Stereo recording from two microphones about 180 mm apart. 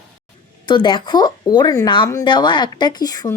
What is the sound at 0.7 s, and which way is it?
Speech, 25° left (ahead or behind).